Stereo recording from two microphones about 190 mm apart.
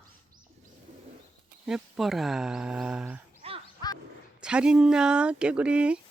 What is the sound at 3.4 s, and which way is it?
Music, 30° right (ahead or behind).